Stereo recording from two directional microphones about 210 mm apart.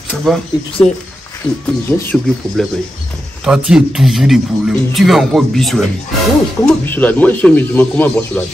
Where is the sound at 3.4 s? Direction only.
5° right (ahead or behind).